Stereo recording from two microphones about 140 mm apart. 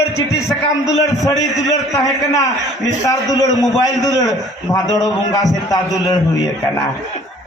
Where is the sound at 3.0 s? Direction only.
25° left (ahead or behind).